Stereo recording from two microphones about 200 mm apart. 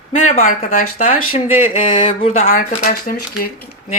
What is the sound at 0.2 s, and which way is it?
Speech, 40° left (ahead or behind).